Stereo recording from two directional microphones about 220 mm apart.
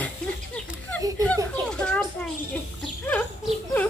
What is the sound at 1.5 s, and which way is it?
Children playing, 5° left (ahead or behind).